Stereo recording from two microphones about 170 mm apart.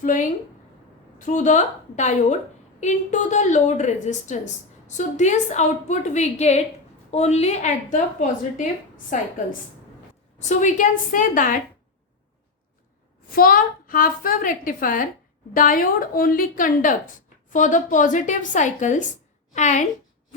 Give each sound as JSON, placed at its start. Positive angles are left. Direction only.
{"t": 0.0, "sound": "a woman's voice", "side_deg": 50}
{"t": 10.3, "sound": "a woman's voice", "side_deg": 45}
{"t": 13.3, "sound": "a woman's voice", "side_deg": 55}